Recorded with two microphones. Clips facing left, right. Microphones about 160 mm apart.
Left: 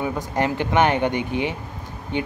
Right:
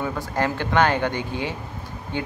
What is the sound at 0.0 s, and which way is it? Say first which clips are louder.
Speech: left 1 dB; 15° left (ahead or behind).